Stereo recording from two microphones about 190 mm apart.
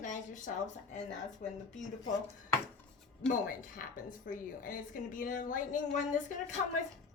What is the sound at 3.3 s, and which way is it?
Speech, 45° left (ahead or behind).